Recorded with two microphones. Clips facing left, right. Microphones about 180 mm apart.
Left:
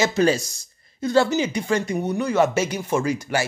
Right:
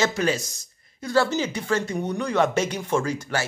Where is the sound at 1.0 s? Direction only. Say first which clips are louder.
Left 3 dB; 20° left (ahead or behind).